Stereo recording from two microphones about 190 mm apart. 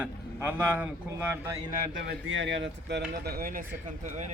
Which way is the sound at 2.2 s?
80° right.